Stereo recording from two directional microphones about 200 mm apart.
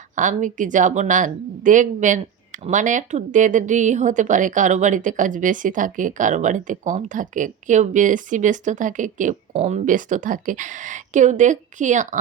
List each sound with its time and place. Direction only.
0.2 s speech: 40° right (ahead or behind)